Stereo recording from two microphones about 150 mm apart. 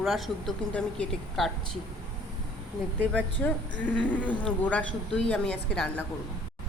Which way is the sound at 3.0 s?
10° left (ahead or behind).